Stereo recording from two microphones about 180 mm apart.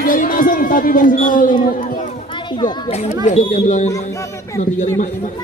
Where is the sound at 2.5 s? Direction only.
25° left (ahead or behind).